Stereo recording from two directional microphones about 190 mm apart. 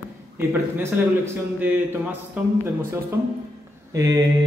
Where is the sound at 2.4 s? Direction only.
5° right (ahead or behind).